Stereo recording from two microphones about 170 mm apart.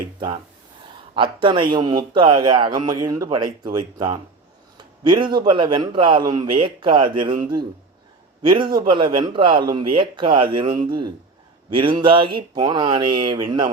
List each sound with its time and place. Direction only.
1.1 s a man's voice: 30° right (ahead or behind)
8.4 s a man's voice: 25° right (ahead or behind)